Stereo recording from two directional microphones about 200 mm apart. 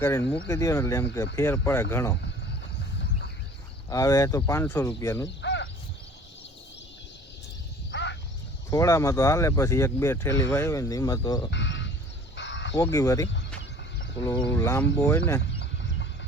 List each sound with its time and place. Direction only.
0.0 s speech: 10° left (ahead or behind)
3.8 s speech: 15° left (ahead or behind)
5.2 s speech: 60° left (ahead or behind)
7.9 s a sound: 60° left (ahead or behind)
8.7 s speech: 15° left (ahead or behind)
11.5 s a sound: 65° left (ahead or behind)
12.4 s crow: 65° left (ahead or behind)
12.7 s speech: 15° left (ahead or behind)
14.5 s speech: 15° left (ahead or behind)
15.5 s a sound: 65° left (ahead or behind)